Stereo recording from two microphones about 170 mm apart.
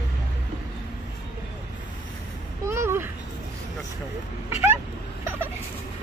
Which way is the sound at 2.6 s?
15° right (ahead or behind).